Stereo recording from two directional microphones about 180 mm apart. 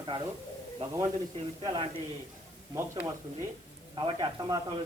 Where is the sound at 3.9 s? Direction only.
25° right (ahead or behind).